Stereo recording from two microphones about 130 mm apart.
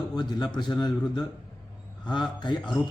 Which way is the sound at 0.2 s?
30° left (ahead or behind).